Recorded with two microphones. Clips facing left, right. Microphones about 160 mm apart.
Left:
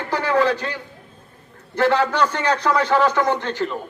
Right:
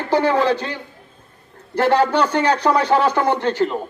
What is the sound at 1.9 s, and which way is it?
Speech, 35° right (ahead or behind).